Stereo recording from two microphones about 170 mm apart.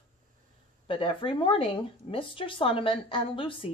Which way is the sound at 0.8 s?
30° left (ahead or behind).